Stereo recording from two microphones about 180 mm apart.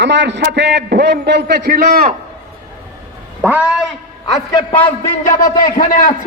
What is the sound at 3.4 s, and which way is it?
Speech, 10° right (ahead or behind).